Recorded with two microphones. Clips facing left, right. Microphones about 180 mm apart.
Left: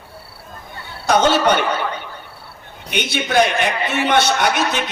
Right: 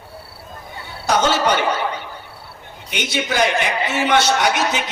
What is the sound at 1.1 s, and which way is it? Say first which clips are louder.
Speech: left 3 dB; 60° left (ahead or behind).